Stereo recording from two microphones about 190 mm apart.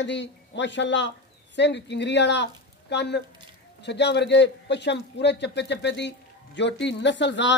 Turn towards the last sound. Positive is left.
turn(degrees=70)  # may be behind; listen again after turning